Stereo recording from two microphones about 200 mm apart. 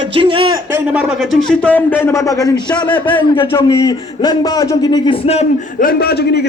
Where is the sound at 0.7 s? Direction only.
5° right (ahead or behind); by 5.5 s 30° left (ahead or behind).